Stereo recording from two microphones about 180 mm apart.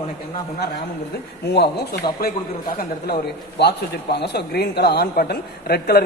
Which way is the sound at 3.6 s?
65° left (ahead or behind).